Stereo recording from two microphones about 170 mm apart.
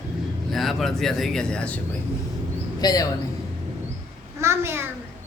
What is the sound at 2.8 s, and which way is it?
Speech, 20° left (ahead or behind).